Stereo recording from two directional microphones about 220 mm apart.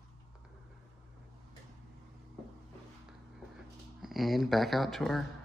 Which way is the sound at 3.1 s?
Centre (ahead or behind).